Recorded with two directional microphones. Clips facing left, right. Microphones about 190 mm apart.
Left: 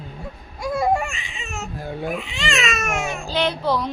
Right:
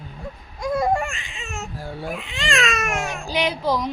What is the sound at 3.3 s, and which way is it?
Music, 10° right (ahead or behind).